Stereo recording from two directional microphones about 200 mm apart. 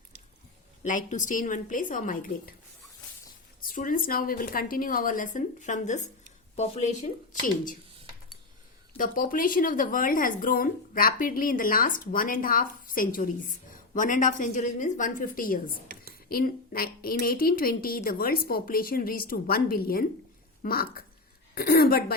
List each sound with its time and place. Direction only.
0.8 s a woman's voice: 40° left (ahead or behind)
3.6 s a woman's voice: 45° left (ahead or behind)
9.0 s speech: 45° left (ahead or behind)